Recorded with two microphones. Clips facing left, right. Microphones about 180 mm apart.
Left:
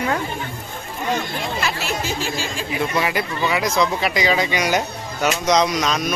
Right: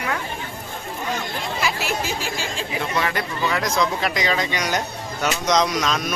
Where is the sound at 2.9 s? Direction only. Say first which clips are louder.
Even; 10° left (ahead or behind).